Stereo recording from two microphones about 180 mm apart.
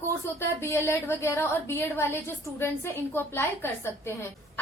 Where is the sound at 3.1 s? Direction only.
15° left (ahead or behind).